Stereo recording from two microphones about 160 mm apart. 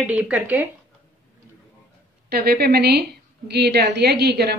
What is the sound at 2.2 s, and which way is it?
A woman's voice, 75° right (ahead or behind).